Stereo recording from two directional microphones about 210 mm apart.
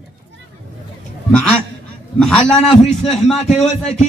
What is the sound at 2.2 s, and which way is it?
A man's voice, 5° left (ahead or behind).